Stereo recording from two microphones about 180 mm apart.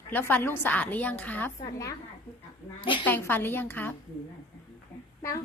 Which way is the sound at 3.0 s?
10° left (ahead or behind).